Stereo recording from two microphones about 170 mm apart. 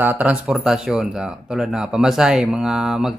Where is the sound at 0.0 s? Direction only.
10° right (ahead or behind).